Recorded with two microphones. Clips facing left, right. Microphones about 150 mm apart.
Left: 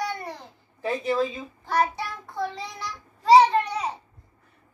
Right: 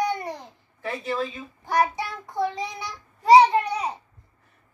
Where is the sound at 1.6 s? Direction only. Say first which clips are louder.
Right 1 dB; 15° right (ahead or behind).